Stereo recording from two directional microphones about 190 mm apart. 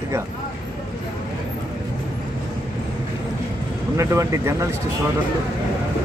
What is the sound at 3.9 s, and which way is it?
Speech, 15° right (ahead or behind).